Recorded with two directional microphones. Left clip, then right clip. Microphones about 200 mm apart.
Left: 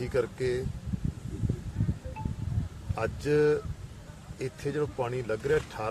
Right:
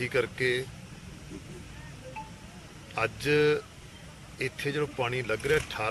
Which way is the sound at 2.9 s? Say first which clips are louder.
Right 1 dB; 10° left (ahead or behind).